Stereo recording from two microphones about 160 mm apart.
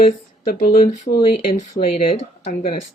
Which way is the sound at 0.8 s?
45° left (ahead or behind).